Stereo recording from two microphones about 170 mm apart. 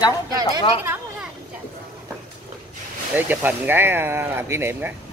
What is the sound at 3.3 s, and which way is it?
Speech, 10° right (ahead or behind).